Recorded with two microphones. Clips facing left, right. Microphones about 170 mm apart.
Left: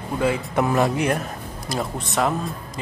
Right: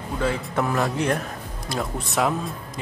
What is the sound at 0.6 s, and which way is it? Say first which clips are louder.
Speech: left 5 dB; 20° left (ahead or behind).